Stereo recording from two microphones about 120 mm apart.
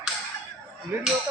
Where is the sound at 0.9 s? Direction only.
20° right (ahead or behind).